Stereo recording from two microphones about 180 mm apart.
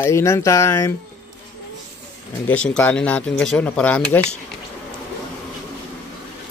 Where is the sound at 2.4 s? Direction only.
5° left (ahead or behind).